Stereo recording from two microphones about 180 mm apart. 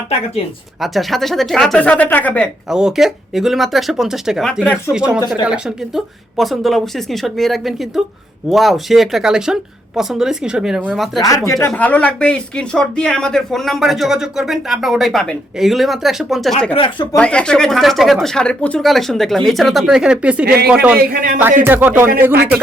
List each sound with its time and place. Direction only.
0.4 s speech: 30° left (ahead or behind)
0.8 s speech: centre (ahead or behind)
11.3 s speech: 20° left (ahead or behind)
11.7 s speech: 5° left (ahead or behind)
16.7 s speech: 25° left (ahead or behind)
17.2 s speech: 5° left (ahead or behind)
20.4 s a man's voice: 60° right (ahead or behind)
21.6 s speech: 10° right (ahead or behind)